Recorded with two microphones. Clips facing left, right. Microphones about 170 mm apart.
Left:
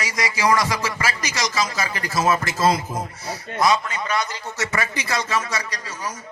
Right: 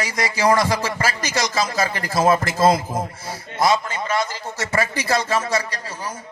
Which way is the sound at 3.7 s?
30° right (ahead or behind).